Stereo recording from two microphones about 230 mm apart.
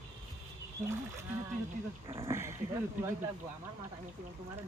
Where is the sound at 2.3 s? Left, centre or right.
Centre.